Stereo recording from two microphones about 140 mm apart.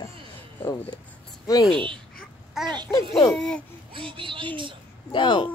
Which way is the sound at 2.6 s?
30° right (ahead or behind).